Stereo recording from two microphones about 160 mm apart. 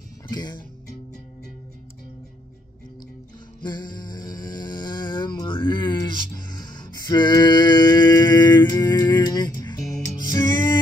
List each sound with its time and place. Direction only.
0.3 s speech: 25° left (ahead or behind)
3.6 s music: 30° left (ahead or behind)